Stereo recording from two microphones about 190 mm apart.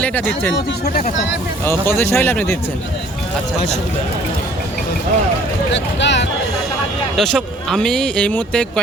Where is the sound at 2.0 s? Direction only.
10° left (ahead or behind).